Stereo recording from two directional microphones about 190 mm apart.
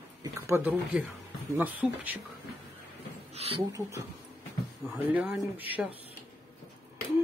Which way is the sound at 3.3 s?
30° right (ahead or behind).